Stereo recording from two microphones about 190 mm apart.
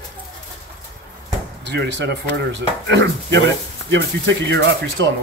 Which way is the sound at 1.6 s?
65° right (ahead or behind).